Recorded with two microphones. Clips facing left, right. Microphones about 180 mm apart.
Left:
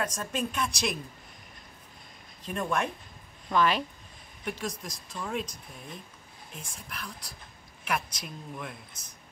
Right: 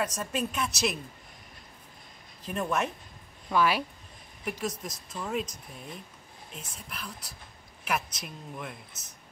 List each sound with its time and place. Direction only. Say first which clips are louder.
0.0 s speech: right 1 dB; 5° right (ahead or behind)
2.4 s speech: even; 5° right (ahead or behind)
6.6 s speech: left 1 dB; 5° right (ahead or behind)